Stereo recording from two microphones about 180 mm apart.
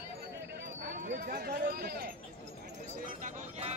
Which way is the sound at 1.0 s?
55° right (ahead or behind).